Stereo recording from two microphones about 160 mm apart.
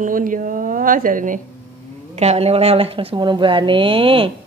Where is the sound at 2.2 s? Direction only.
40° right (ahead or behind).